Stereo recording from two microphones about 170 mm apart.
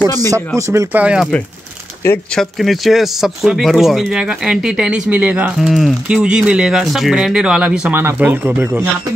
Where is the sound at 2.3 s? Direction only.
Centre (ahead or behind).